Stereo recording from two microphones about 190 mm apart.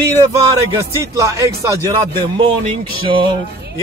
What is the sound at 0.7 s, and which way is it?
Speech, 15° right (ahead or behind).